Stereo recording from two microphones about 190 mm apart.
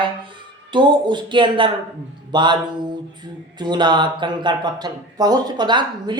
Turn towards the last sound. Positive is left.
turn(degrees=-25)  # may be behind; listen again after turning